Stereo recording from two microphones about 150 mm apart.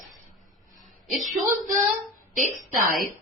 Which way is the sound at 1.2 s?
60° right (ahead or behind).